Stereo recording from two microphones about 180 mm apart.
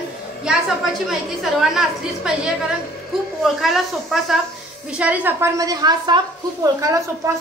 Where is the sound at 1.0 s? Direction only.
Centre (ahead or behind).